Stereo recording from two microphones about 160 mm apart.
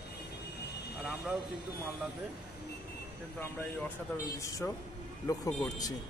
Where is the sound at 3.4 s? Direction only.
10° left (ahead or behind).